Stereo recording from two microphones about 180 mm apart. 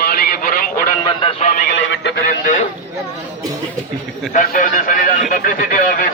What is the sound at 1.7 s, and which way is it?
Neigh, 75° left (ahead or behind).